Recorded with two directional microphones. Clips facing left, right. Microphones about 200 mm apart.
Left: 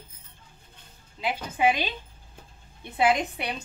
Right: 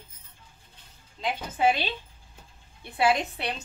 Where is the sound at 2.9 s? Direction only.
15° left (ahead or behind).